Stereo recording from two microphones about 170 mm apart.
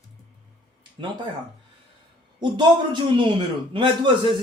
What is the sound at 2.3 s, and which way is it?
A man's voice, 25° right (ahead or behind).